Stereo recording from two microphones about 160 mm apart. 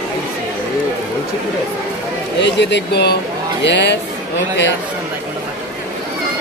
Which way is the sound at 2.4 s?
90° left.